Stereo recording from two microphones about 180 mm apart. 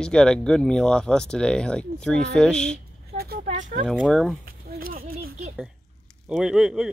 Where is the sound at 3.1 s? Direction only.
60° right (ahead or behind).